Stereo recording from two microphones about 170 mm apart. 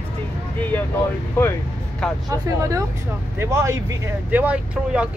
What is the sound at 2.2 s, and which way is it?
Speech, 20° right (ahead or behind).